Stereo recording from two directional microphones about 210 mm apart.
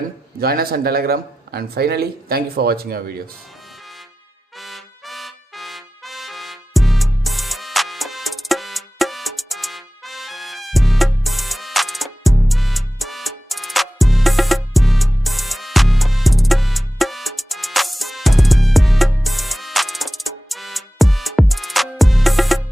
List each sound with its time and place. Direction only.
0.3 s speech: 45° right (ahead or behind)
4.5 s trumpet: centre (ahead or behind)